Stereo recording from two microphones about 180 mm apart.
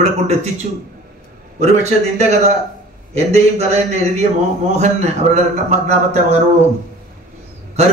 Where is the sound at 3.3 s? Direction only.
35° right (ahead or behind).